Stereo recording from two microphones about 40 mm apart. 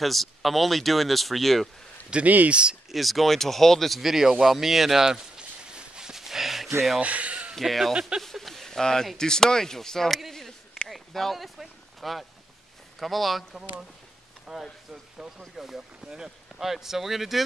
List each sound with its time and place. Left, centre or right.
0.0 s speech: centre
2.2 s speech: right
2.5 s speech: right
2.9 s speech: centre
4.0 s a sound: centre
7.0 s a sound: right
7.5 s speech: centre
10.9 s a sound: centre
12.0 s speech: centre